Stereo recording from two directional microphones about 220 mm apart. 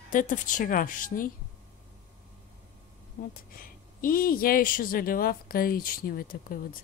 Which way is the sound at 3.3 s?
40° left (ahead or behind).